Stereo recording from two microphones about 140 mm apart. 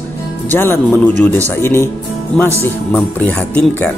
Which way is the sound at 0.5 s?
15° left (ahead or behind).